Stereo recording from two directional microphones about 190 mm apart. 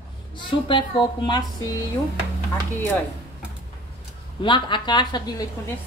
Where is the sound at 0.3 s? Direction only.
25° left (ahead or behind).